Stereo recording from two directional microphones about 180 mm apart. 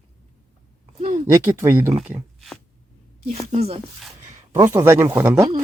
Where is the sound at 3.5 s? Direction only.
35° right (ahead or behind).